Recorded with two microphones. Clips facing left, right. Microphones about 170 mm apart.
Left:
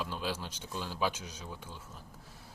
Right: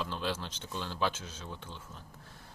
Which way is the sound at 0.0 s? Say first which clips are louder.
Right 1 dB; 10° left (ahead or behind).